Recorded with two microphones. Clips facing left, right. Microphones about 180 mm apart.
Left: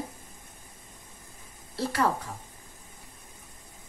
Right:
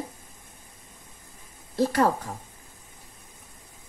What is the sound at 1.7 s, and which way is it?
Speech, 50° right (ahead or behind).